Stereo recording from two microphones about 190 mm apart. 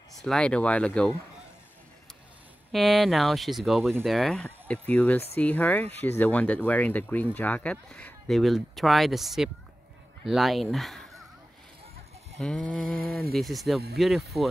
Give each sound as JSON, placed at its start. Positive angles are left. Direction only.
{"t": 0.2, "sound": "speech", "side_deg": 5}
{"t": 2.7, "sound": "speech", "side_deg": 0}
{"t": 12.4, "sound": "speech", "side_deg": 5}
{"t": 12.7, "sound": "a sound", "side_deg": -50}
{"t": 13.3, "sound": "speech", "side_deg": 0}